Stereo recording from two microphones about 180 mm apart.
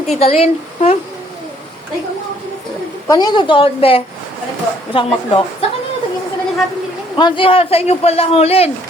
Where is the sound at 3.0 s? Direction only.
20° left (ahead or behind).